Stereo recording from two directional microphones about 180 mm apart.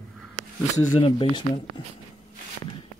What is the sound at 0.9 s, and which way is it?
Speech, 30° left (ahead or behind).